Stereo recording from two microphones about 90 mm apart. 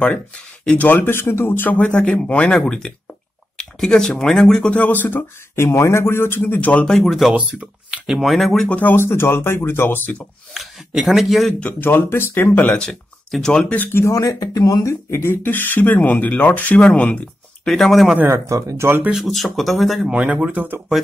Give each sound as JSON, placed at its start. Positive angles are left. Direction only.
{"t": 0.0, "sound": "speech", "side_deg": 10}
{"t": 7.0, "sound": "speech", "side_deg": 0}
{"t": 7.3, "sound": "speech", "side_deg": -15}
{"t": 8.1, "sound": "speech", "side_deg": 0}
{"t": 8.6, "sound": "speech", "side_deg": 20}
{"t": 10.5, "sound": "speech", "side_deg": -5}
{"t": 11.6, "sound": "speech", "side_deg": 25}
{"t": 12.8, "sound": "speech", "side_deg": 10}
{"t": 13.7, "sound": "speech", "side_deg": 30}
{"t": 15.0, "sound": "speech", "side_deg": 25}
{"t": 18.3, "sound": "speech", "side_deg": -35}
{"t": 19.2, "sound": "speech", "side_deg": 0}
{"t": 20.1, "sound": "speech", "side_deg": -15}